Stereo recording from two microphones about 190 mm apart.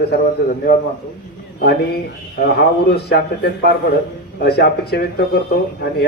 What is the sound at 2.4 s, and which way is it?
A man's voice, 55° left (ahead or behind).